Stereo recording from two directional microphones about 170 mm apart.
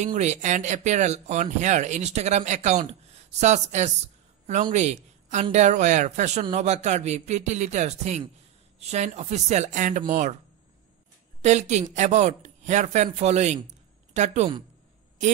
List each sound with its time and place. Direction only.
0.0 s a man's voice: 45° right (ahead or behind)
11.4 s a man's voice: 40° right (ahead or behind)